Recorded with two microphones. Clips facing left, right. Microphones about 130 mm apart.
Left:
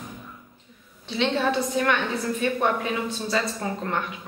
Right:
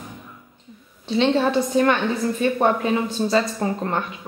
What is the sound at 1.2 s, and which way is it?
Speech, 35° right (ahead or behind).